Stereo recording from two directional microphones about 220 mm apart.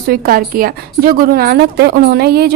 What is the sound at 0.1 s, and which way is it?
A woman's voice, 40° right (ahead or behind).